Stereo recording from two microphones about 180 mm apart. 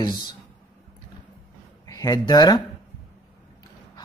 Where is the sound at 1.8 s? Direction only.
20° left (ahead or behind).